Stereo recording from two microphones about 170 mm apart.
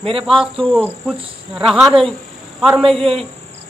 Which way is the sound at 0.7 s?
Centre (ahead or behind).